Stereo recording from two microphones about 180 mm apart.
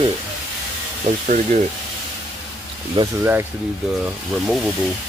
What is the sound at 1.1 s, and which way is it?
Speech, 40° right (ahead or behind).